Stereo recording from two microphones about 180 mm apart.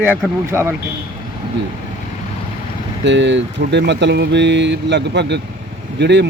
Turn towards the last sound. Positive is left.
turn(degrees=-75)  # may be behind; listen again after turning